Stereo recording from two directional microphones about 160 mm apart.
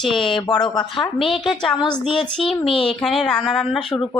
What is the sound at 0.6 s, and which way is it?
Speech, 30° left (ahead or behind).